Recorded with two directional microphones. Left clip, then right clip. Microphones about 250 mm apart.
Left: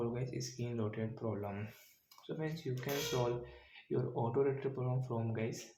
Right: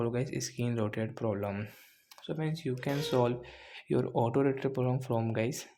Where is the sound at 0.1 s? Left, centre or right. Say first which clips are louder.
Right 7 dB; right.